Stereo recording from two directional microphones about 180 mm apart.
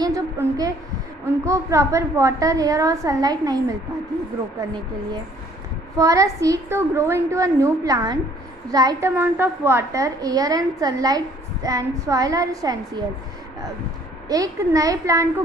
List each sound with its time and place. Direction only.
0.0 s a woman's voice: 20° right (ahead or behind)
6.0 s a woman's voice: 20° right (ahead or behind)
14.3 s a woman's voice: 20° right (ahead or behind)